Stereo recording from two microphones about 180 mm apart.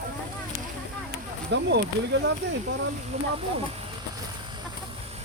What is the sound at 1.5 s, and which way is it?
Speech, 75° right (ahead or behind).